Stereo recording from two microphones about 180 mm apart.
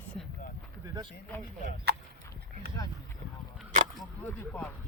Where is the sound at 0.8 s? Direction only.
25° right (ahead or behind).